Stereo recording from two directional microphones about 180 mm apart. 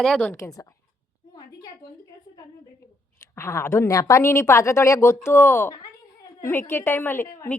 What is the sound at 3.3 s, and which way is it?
A woman's voice, 15° left (ahead or behind).